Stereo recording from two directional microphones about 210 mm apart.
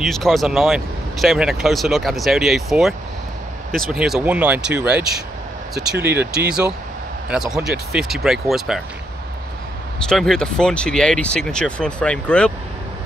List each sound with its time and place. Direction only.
0.0 s speech: centre (ahead or behind)
6.0 s speech: 5° right (ahead or behind)
10.0 s speech: centre (ahead or behind)